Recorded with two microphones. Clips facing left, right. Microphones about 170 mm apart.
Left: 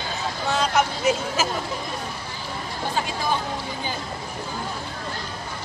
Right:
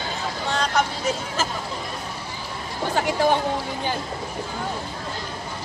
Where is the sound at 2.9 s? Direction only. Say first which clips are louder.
Right 7 dB; 70° right (ahead or behind).